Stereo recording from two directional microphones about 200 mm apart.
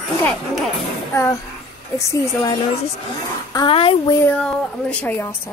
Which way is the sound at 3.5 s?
25° left (ahead or behind).